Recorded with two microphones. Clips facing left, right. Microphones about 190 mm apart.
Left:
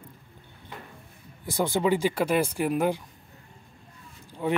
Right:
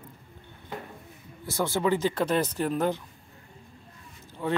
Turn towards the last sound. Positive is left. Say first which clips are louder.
# left 2 dB
turn(degrees=15)  # may be behind; listen again after turning